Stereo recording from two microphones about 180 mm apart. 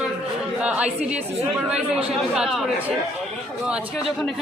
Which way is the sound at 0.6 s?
5° right (ahead or behind).